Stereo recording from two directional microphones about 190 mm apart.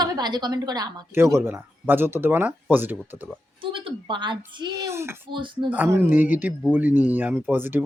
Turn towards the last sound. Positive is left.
turn(degrees=-10)  # may be behind; listen again after turning